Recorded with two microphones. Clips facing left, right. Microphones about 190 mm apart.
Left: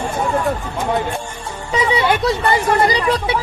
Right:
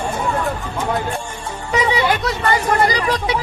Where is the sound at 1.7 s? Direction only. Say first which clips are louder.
Left 1 dB; 30° left (ahead or behind).